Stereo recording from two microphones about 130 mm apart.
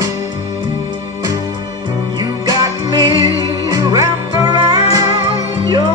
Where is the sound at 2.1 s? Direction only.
30° right (ahead or behind).